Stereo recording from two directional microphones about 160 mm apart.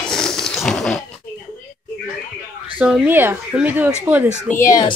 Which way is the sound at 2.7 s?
5° right (ahead or behind).